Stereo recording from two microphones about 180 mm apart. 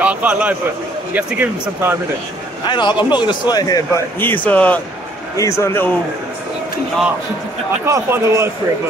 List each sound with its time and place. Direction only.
0.0 s speech: 5° right (ahead or behind)
2.7 s a man's voice: 25° left (ahead or behind)
7.8 s speech: 15° right (ahead or behind)